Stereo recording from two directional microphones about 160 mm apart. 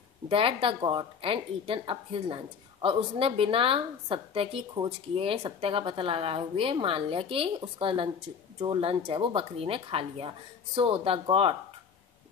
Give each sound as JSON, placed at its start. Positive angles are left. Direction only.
{"t": 0.3, "sound": "a woman's voice", "side_deg": -35}